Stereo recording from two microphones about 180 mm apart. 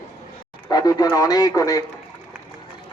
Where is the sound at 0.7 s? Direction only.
20° left (ahead or behind).